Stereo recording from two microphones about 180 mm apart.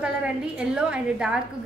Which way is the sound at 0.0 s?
5° right (ahead or behind).